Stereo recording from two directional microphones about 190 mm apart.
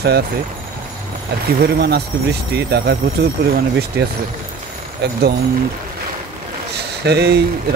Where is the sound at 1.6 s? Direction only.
55° right (ahead or behind).